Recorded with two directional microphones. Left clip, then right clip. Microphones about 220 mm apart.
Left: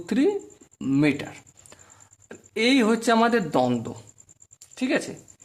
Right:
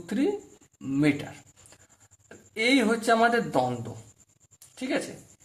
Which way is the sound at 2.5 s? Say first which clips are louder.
Left 3 dB; 35° left (ahead or behind).